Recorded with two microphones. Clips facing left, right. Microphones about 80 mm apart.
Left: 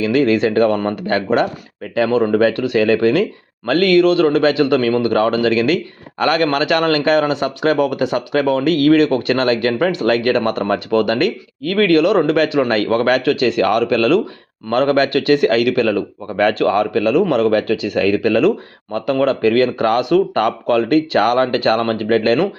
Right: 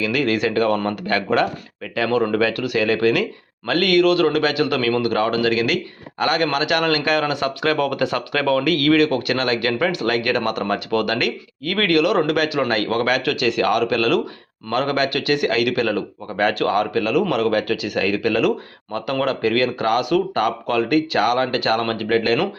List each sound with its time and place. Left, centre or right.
0.0 s speech: left